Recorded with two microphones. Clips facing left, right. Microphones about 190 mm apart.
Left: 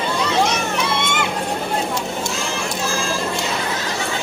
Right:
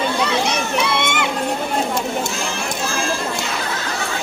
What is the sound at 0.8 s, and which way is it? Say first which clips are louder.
Music: right 1 dB; 60° right (ahead or behind).